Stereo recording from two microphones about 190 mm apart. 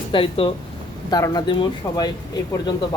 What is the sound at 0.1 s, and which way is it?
Speech, 30° left (ahead or behind).